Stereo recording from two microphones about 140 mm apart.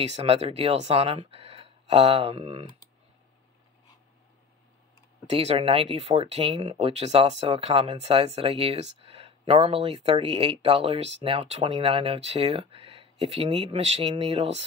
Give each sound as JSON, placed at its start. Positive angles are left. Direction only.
{"t": 0.0, "sound": "speech", "side_deg": -45}
{"t": 5.3, "sound": "speech", "side_deg": -45}